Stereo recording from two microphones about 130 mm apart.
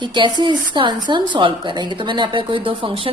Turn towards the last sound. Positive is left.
turn(degrees=-45)  # may be behind; listen again after turning